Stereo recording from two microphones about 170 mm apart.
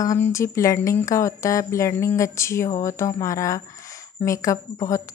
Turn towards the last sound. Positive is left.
turn(degrees=20)  # may be behind; listen again after turning